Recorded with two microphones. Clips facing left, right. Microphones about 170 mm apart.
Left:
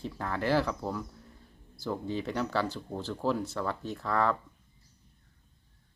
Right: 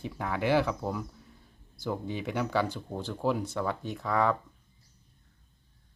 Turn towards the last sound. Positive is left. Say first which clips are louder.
# right 1 dB
turn(degrees=-15)  # may be behind; listen again after turning